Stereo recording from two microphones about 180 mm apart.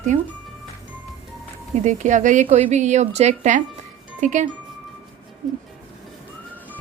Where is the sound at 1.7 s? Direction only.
40° right (ahead or behind).